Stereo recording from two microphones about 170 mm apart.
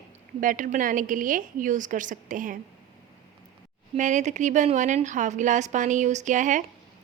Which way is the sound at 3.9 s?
45° right (ahead or behind).